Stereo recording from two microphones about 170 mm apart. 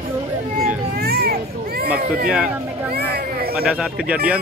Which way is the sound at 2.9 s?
65° right (ahead or behind).